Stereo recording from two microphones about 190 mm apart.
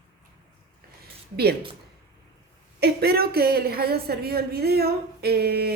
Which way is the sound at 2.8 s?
55° right (ahead or behind).